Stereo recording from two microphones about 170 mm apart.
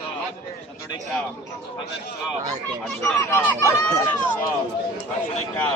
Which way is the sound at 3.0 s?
15° left (ahead or behind).